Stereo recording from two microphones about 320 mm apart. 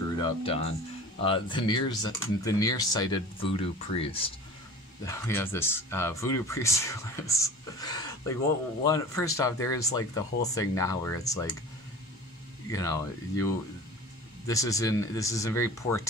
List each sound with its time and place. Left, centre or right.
0.1 s speech: centre
12.7 s speech: centre
14.5 s speech: centre